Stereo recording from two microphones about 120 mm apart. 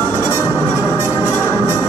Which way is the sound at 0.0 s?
25° left (ahead or behind).